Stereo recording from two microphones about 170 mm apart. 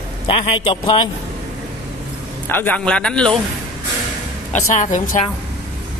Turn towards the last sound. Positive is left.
turn(degrees=45)  # may be behind; listen again after turning